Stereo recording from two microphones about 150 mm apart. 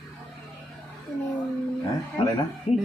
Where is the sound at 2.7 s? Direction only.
45° left (ahead or behind).